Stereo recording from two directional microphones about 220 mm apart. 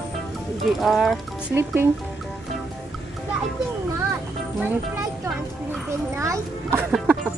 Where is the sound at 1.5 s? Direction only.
10° right (ahead or behind).